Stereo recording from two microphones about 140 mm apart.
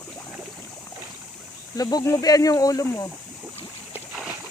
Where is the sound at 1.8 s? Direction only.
25° left (ahead or behind).